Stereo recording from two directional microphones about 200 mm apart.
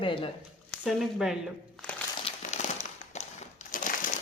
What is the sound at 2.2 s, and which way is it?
Crumpling, 35° left (ahead or behind).